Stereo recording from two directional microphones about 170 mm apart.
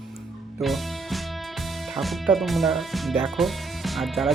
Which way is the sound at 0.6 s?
Centre (ahead or behind).